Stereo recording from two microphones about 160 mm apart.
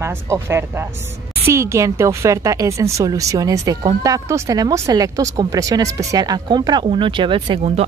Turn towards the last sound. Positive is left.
turn(degrees=-35)  # may be behind; listen again after turning